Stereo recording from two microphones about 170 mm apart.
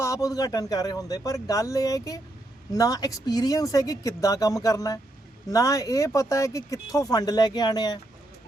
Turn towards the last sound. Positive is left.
turn(degrees=25)  # may be behind; listen again after turning